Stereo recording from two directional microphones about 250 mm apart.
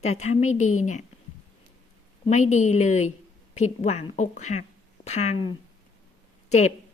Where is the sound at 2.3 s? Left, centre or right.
Left.